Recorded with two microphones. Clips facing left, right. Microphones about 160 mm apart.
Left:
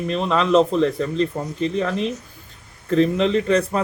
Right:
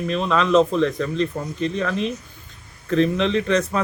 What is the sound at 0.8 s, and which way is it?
Speech, 35° left (ahead or behind).